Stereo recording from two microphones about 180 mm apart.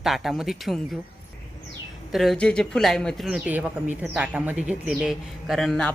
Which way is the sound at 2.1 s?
Centre (ahead or behind).